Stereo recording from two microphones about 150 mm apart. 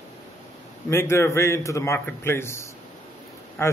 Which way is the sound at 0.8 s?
20° left (ahead or behind).